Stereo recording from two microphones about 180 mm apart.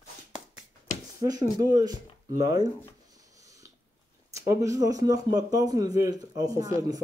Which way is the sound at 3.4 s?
20° right (ahead or behind).